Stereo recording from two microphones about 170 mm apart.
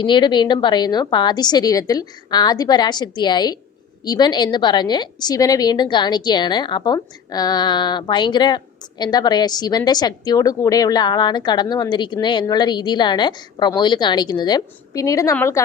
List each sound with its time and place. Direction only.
0.0 s a woman's voice: 25° left (ahead or behind)